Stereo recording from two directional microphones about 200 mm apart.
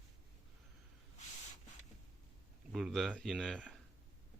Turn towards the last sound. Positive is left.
turn(degrees=0)  # may be behind; listen again after turning